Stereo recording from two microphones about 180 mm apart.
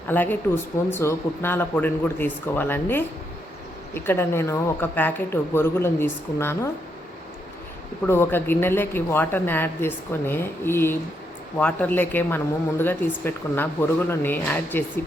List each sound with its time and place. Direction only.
0.1 s speech: 10° left (ahead or behind)
8.0 s speech: 15° left (ahead or behind)